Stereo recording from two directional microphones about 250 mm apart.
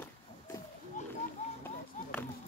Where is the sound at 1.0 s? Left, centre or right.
Left.